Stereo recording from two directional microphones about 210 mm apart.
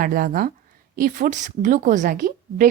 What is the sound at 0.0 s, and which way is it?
A woman's voice, 40° right (ahead or behind).